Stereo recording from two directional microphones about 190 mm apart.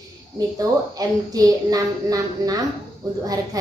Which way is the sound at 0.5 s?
20° right (ahead or behind).